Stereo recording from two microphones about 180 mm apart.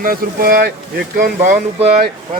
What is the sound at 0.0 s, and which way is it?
Speech, 55° right (ahead or behind).